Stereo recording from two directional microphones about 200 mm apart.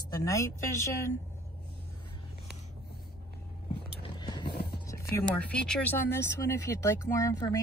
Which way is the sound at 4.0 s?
20° left (ahead or behind).